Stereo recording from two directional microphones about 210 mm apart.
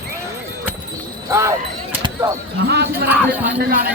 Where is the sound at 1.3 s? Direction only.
15° right (ahead or behind).